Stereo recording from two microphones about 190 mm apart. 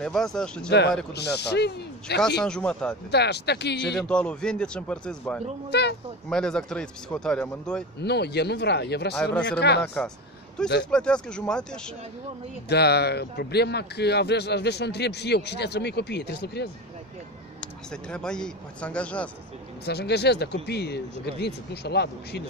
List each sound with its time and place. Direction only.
0.0 s speech: 5° left (ahead or behind)
0.7 s speech: 60° left (ahead or behind)
2.4 s speech: 5° left (ahead or behind)
3.1 s speech: 60° left (ahead or behind)
4.0 s speech: 5° left (ahead or behind)
5.7 s speech: 60° left (ahead or behind)
6.2 s speech: 5° left (ahead or behind)
8.0 s speech: 60° left (ahead or behind)
9.1 s speech: 5° left (ahead or behind)
9.6 s speech: 60° left (ahead or behind)
10.9 s speech: 5° left (ahead or behind)
12.6 s speech: 60° left (ahead or behind)
18.1 s speech: 5° left (ahead or behind)
19.8 s speech: 60° left (ahead or behind)